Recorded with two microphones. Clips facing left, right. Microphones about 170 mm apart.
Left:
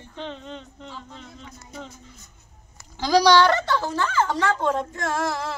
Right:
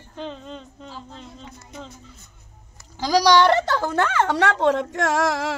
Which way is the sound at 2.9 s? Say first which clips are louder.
Even; 10° right (ahead or behind).